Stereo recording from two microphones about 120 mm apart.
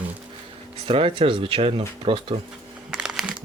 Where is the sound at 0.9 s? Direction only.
50° right (ahead or behind).